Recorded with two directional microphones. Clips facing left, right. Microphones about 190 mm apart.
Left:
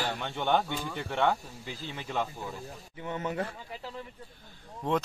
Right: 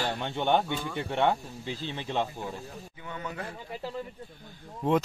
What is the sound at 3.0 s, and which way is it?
Speech, 25° left (ahead or behind).